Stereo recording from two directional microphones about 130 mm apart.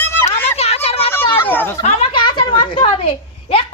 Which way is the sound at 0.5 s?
55° left (ahead or behind).